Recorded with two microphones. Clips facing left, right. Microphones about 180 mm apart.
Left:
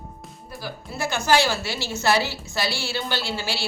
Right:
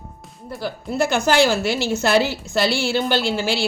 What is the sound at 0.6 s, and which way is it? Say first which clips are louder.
A woman's voice: right 8 dB; 55° right (ahead or behind).